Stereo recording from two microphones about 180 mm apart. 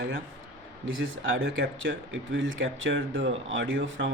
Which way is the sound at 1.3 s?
65° right (ahead or behind).